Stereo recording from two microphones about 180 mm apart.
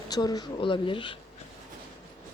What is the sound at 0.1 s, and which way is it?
Speech, 20° left (ahead or behind).